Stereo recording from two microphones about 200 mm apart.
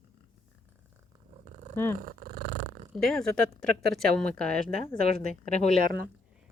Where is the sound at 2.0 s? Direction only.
45° right (ahead or behind).